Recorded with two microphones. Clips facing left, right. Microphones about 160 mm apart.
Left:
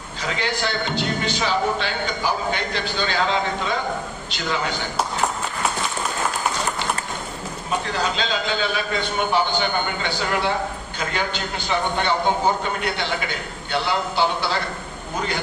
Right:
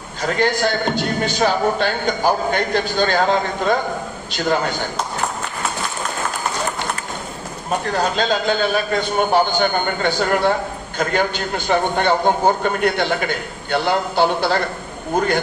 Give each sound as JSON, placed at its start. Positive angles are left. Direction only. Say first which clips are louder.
{"t": 0.2, "sound": "a man's voice", "louder": "right 7 dB", "side_deg": -50}
{"t": 7.7, "sound": "a man's voice", "louder": "right 4 dB", "side_deg": -50}